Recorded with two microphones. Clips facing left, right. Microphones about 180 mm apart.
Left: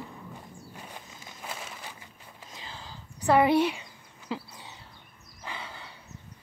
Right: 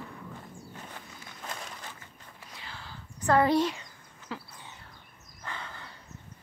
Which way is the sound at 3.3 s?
10° left (ahead or behind).